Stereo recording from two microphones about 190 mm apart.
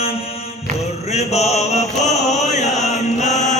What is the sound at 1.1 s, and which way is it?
Chant, 35° left (ahead or behind).